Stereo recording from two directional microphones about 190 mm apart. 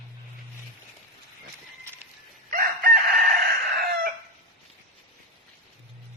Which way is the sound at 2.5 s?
50° right (ahead or behind).